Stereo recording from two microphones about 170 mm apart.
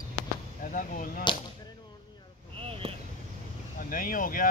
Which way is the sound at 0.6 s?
50° left (ahead or behind).